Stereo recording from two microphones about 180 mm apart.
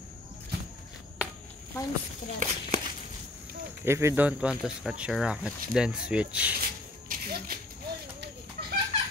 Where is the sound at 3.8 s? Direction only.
15° right (ahead or behind).